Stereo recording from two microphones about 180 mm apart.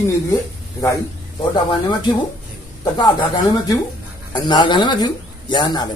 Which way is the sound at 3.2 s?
20° left (ahead or behind).